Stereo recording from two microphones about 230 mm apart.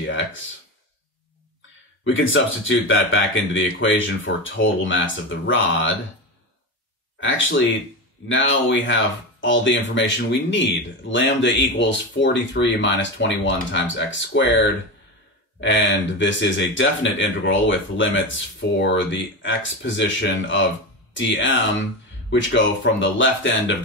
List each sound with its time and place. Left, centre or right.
0.0 s speech: left
2.0 s speech: left
7.2 s speech: left
15.6 s speech: left